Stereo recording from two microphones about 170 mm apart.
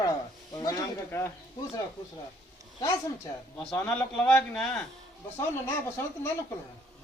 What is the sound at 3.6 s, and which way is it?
A man's voice, 10° left (ahead or behind).